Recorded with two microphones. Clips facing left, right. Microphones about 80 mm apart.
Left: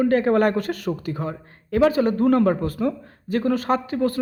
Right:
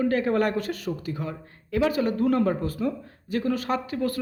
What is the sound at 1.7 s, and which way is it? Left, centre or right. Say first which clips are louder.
A man's voice: left 5 dB; left.